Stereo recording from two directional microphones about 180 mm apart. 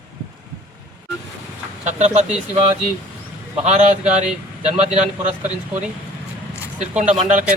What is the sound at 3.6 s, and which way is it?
A man's voice, 40° right (ahead or behind).